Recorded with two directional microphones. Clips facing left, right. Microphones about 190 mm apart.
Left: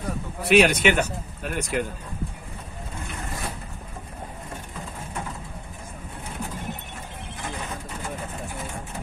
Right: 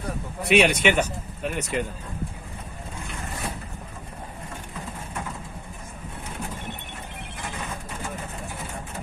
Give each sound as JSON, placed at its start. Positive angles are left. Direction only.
{"t": 0.4, "sound": "speech", "side_deg": 5}